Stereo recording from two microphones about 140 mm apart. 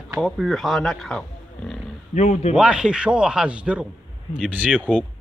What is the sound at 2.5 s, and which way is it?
Speech, 5° right (ahead or behind).